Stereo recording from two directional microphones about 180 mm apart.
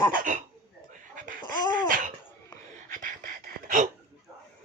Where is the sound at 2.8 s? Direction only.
45° right (ahead or behind).